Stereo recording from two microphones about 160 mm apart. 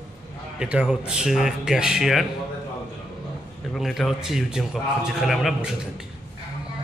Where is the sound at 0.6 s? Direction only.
5° right (ahead or behind).